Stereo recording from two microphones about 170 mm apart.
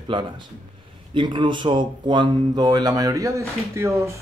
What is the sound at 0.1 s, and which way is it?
Speech, 30° right (ahead or behind).